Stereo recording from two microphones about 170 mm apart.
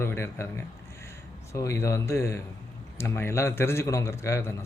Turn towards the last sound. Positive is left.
turn(degrees=15)  # may be behind; listen again after turning